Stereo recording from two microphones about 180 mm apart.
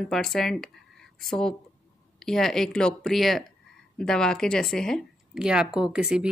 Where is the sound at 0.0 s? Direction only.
Centre (ahead or behind).